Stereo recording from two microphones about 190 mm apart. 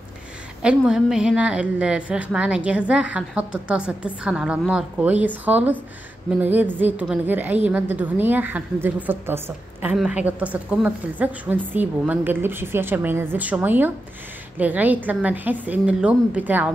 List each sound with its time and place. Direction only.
0.6 s a woman's voice: 5° right (ahead or behind)